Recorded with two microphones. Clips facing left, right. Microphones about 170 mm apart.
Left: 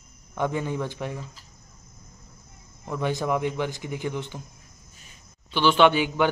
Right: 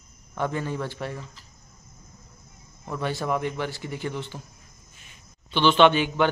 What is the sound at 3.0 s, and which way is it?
A man's voice, 15° left (ahead or behind).